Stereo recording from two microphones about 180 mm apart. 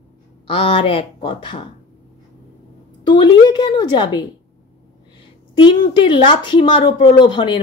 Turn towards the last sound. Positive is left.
turn(degrees=25)  # may be behind; listen again after turning